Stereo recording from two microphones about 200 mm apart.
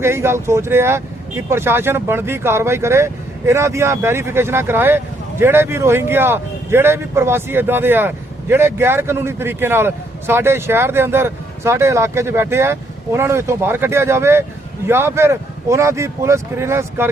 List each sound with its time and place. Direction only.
0.0 s speech: 10° right (ahead or behind)